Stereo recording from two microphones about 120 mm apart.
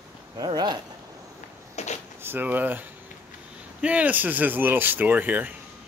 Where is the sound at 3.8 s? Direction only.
10° right (ahead or behind).